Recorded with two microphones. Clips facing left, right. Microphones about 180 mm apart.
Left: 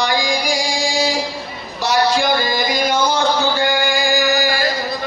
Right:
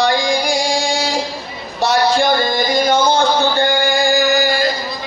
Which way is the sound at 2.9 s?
25° right (ahead or behind).